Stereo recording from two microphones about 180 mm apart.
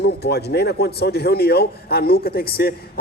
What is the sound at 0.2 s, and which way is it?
A man's voice, 65° left (ahead or behind).